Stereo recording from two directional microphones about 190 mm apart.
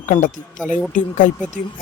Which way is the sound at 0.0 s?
40° left (ahead or behind).